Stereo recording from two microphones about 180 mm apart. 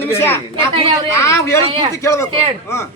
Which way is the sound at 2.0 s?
15° left (ahead or behind).